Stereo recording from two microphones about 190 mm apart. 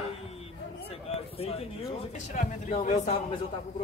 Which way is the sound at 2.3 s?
35° left (ahead or behind).